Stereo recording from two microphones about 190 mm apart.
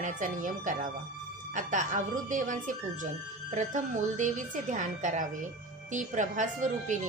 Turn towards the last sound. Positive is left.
turn(degrees=-40)  # may be behind; listen again after turning